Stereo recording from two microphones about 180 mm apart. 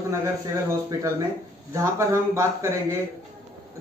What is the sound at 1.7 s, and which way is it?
A man's voice, 15° right (ahead or behind).